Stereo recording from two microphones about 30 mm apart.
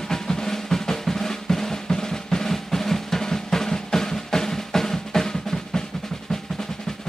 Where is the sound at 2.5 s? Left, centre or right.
Centre.